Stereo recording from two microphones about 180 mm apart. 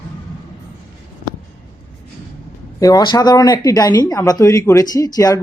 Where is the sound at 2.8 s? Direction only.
20° left (ahead or behind).